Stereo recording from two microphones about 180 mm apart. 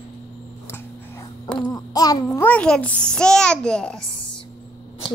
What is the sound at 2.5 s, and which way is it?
A child's voice, 5° left (ahead or behind).